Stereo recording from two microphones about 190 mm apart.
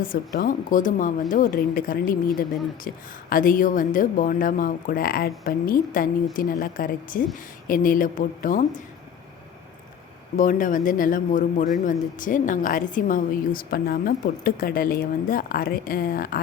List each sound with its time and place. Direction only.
0.0 s a woman's voice: 45° left (ahead or behind)
10.3 s a woman's voice: 45° left (ahead or behind)